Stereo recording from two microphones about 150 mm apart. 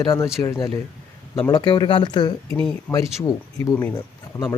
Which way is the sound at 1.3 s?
25° left (ahead or behind).